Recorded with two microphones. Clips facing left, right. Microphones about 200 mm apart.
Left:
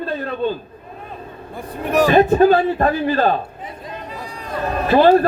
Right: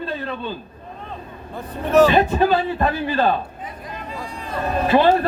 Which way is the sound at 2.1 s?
45° left (ahead or behind).